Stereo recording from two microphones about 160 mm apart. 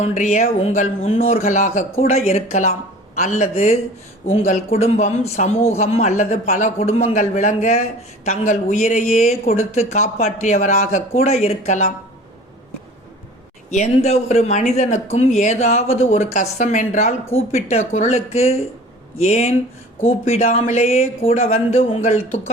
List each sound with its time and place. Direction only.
0.0 s a man's voice: 45° left (ahead or behind)
13.7 s a man's voice: 45° left (ahead or behind)